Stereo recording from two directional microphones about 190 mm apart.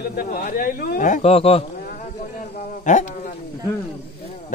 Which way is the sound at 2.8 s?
40° left (ahead or behind).